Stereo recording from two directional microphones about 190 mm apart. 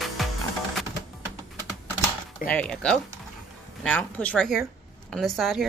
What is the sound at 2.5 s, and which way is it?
A woman's voice, 5° left (ahead or behind).